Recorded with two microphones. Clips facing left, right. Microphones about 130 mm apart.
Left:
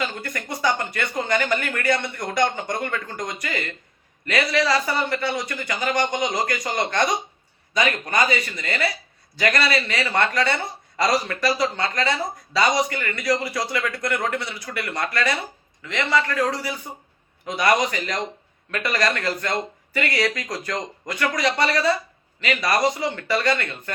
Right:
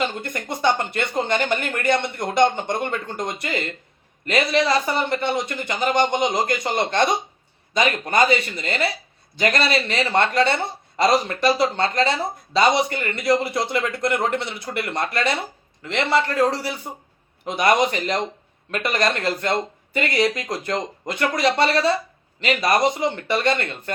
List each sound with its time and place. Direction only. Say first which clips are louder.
0.0 s speech: right 3 dB; 25° right (ahead or behind)